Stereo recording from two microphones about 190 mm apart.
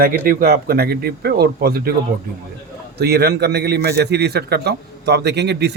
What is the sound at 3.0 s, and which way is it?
A man's voice, 55° right (ahead or behind).